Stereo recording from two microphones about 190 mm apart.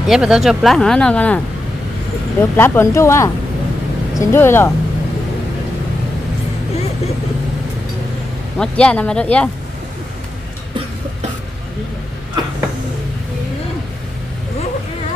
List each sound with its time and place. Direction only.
0.0 s speech: 5° right (ahead or behind)
2.5 s speech: 10° left (ahead or behind)
8.5 s speech: 5° left (ahead or behind)